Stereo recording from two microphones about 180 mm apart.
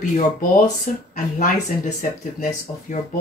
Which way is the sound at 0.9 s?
45° left (ahead or behind).